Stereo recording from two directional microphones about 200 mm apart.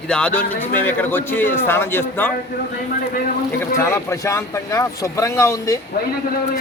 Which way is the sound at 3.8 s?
15° left (ahead or behind).